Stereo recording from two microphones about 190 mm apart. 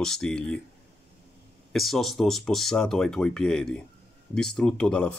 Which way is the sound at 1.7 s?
Centre (ahead or behind).